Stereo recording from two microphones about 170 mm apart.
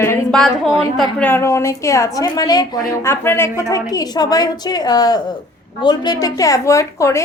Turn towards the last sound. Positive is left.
turn(degrees=20)  # may be behind; listen again after turning